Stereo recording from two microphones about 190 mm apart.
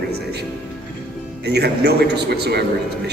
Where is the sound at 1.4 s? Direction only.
60° right (ahead or behind).